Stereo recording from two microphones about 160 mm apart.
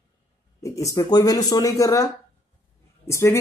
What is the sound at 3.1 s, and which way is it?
Speech, 15° left (ahead or behind).